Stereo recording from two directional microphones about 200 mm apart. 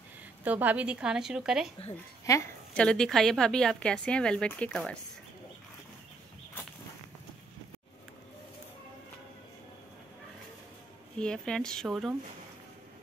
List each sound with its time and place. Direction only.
0.4 s a woman's voice: 10° right (ahead or behind)
2.2 s a sound: 15° left (ahead or behind)
2.8 s a woman's voice: 5° left (ahead or behind)
11.1 s a woman's voice: 5° left (ahead or behind)